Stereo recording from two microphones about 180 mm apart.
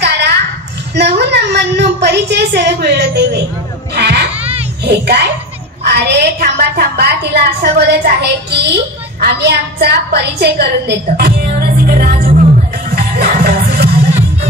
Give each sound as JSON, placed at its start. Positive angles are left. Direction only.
{"t": 0.0, "sound": "children playing", "side_deg": -70}
{"t": 0.9, "sound": "a woman's voice", "side_deg": -70}
{"t": 3.9, "sound": "baby cry", "side_deg": -65}
{"t": 4.8, "sound": "a child's voice", "side_deg": -65}
{"t": 12.9, "sound": "music", "side_deg": -60}